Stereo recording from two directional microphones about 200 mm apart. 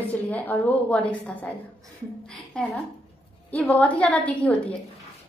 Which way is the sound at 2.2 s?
5° left (ahead or behind).